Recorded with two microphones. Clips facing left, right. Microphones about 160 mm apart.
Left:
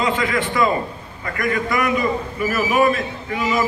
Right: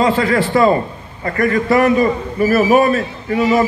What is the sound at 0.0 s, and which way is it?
A man's voice, 35° right (ahead or behind).